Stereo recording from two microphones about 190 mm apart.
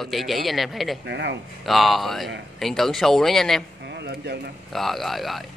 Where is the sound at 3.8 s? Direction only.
60° right (ahead or behind).